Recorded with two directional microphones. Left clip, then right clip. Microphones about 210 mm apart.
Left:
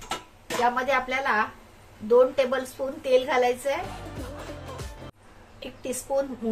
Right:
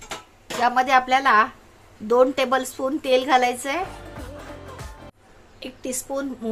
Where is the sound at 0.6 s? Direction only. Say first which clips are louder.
Right 6 dB; 50° right (ahead or behind).